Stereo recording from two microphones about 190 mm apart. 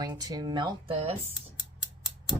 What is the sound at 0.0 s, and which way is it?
Speech, 20° right (ahead or behind).